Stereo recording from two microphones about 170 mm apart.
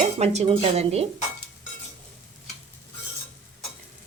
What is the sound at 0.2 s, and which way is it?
Speech, 40° right (ahead or behind).